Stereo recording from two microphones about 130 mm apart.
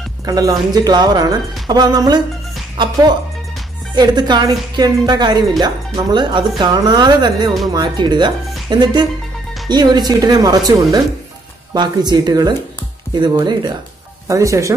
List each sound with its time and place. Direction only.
0.3 s speech: 30° right (ahead or behind)